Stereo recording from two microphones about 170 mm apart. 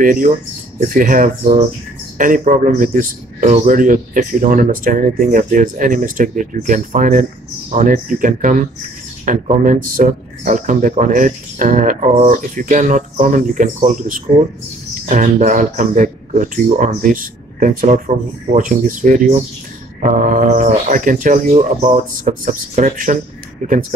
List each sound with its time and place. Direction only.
0.0 s speech: 55° right (ahead or behind)